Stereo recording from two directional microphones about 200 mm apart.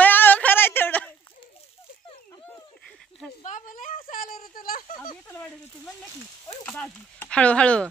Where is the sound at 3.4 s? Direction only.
40° left (ahead or behind).